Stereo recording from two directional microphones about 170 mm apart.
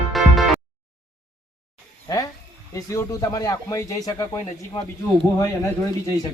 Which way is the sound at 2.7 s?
20° left (ahead or behind).